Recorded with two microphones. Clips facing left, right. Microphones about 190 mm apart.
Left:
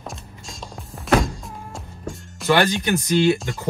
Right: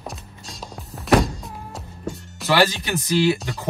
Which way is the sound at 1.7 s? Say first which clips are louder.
Right 3 dB; centre (ahead or behind).